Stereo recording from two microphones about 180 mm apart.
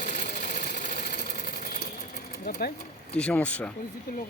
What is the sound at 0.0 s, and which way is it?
Sewing machine, 45° left (ahead or behind).